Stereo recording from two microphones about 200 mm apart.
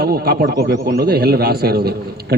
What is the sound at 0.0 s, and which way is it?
Speech, 50° right (ahead or behind).